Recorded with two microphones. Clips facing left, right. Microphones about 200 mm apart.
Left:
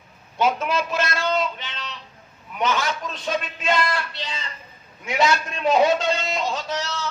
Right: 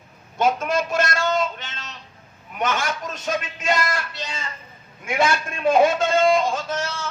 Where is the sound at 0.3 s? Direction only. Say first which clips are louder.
Right 1 dB; 50° right (ahead or behind).